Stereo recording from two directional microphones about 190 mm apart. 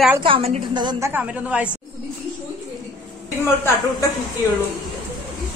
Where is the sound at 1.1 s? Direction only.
10° right (ahead or behind).